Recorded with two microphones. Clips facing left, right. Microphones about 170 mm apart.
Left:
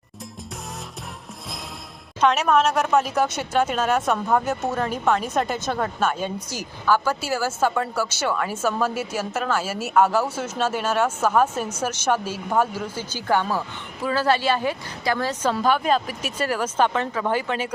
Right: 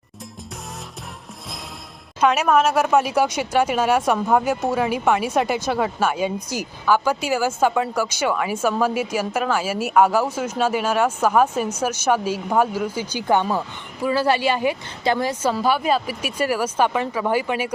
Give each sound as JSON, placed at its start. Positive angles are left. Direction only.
{"t": 2.2, "sound": "a woman's voice", "side_deg": -5}
{"t": 15.3, "sound": "speech", "side_deg": -10}